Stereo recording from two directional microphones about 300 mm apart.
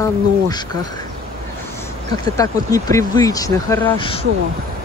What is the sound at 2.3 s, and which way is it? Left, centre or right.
Speech, centre.